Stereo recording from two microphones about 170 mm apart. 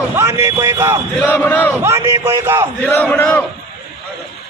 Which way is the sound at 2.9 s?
10° left (ahead or behind).